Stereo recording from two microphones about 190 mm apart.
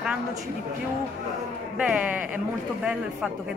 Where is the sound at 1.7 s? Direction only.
5° right (ahead or behind).